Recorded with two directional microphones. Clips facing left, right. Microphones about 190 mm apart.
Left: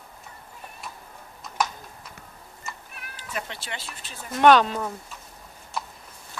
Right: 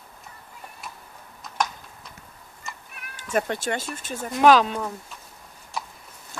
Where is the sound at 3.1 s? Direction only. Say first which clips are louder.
Right 10 dB; 50° right (ahead or behind).